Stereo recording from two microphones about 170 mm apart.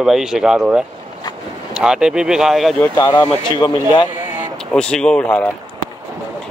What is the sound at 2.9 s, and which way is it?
Speech, 25° left (ahead or behind).